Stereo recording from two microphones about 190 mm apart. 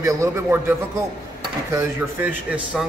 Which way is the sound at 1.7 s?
10° right (ahead or behind).